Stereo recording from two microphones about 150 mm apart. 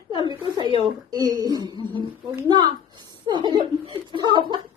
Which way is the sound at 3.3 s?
30° right (ahead or behind).